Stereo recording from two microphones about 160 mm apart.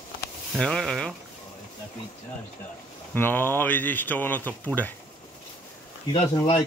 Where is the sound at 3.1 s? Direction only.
10° left (ahead or behind).